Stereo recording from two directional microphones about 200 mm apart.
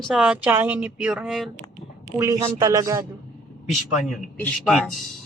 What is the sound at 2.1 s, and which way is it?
Speech, 15° right (ahead or behind).